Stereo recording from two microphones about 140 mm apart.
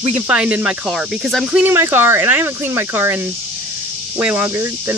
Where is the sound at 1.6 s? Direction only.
15° right (ahead or behind).